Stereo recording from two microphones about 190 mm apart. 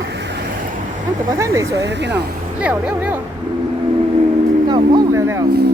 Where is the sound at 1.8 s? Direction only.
65° right (ahead or behind).